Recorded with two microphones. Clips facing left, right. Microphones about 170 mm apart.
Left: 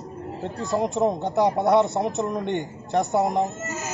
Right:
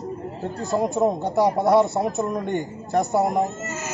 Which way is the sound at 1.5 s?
Centre (ahead or behind).